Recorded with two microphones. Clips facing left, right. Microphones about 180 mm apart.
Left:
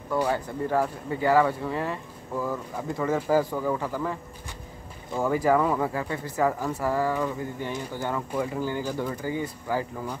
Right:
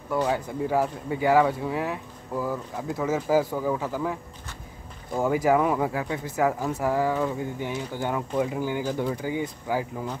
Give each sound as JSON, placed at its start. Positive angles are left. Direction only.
{"t": 0.3, "sound": "speech", "side_deg": -10}